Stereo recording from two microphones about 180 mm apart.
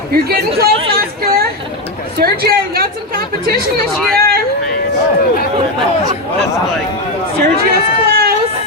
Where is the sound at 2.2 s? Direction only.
60° right (ahead or behind).